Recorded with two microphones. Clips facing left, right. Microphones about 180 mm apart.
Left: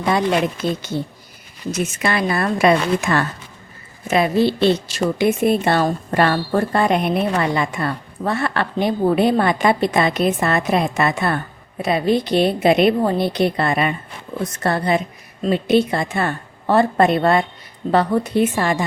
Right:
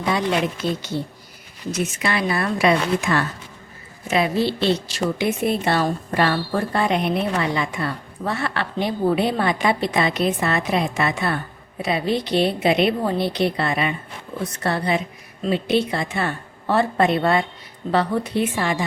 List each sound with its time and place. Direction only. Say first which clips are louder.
0.0 s a woman's voice: left 3 dB; 50° left (ahead or behind)